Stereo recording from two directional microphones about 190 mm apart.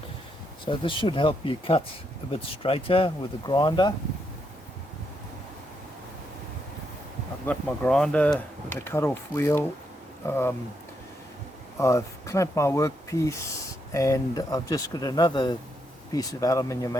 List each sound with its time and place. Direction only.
0.6 s speech: 25° left (ahead or behind)
7.4 s speech: 5° left (ahead or behind)
11.8 s speech: 15° left (ahead or behind)